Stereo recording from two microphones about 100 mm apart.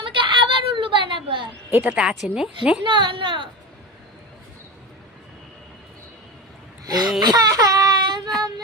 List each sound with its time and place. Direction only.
0.0 s a sound: 55° right (ahead or behind)
1.7 s a woman's voice: 15° right (ahead or behind)
2.8 s a woman's voice: 55° right (ahead or behind)
6.8 s wail: 40° right (ahead or behind)
7.2 s baby cry: 40° right (ahead or behind)